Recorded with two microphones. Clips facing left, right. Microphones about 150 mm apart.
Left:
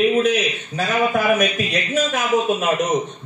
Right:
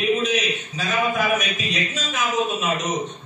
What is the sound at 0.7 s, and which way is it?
A man's voice, 55° left (ahead or behind).